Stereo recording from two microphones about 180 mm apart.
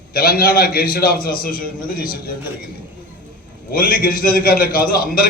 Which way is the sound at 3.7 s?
55° left (ahead or behind).